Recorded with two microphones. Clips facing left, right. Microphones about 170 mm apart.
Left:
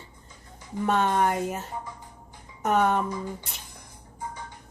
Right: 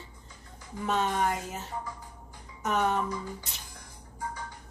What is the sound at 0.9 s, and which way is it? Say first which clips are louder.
Speech: left 4 dB; 60° left (ahead or behind).